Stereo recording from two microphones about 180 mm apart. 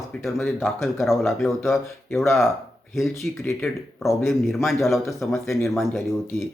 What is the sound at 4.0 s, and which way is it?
Speech, 15° left (ahead or behind).